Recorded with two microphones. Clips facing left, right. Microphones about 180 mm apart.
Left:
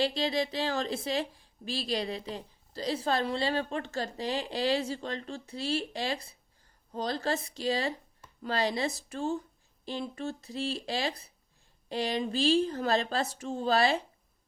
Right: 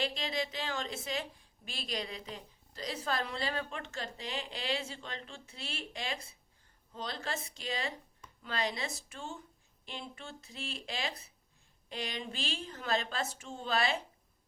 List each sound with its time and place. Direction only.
0.0 s a woman's voice: 35° left (ahead or behind)